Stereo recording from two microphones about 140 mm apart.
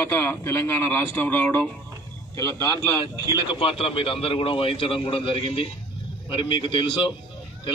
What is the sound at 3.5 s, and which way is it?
A man's voice, 40° left (ahead or behind).